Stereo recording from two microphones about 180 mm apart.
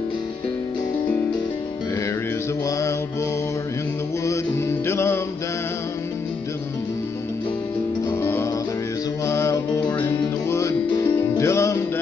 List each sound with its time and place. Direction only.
4.3 s music: 15° left (ahead or behind)
8.1 s music: 15° left (ahead or behind)